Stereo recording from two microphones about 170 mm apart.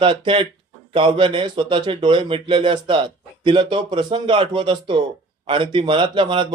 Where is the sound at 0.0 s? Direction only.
30° right (ahead or behind).